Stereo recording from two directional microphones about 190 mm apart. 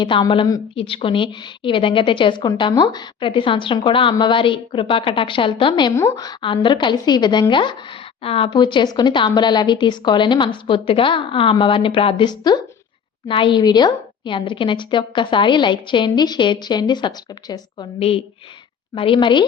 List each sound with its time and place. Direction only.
0.0 s a woman's voice: 25° left (ahead or behind)